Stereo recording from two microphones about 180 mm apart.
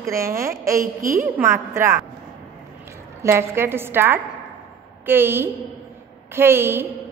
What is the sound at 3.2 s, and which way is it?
A woman's voice, 15° right (ahead or behind).